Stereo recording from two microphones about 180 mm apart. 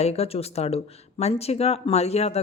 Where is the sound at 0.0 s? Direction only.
35° left (ahead or behind).